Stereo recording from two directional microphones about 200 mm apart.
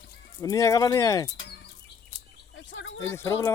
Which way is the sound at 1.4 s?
60° left (ahead or behind).